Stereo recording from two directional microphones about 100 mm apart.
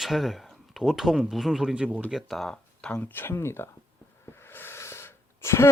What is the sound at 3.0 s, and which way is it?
Speech, 20° left (ahead or behind).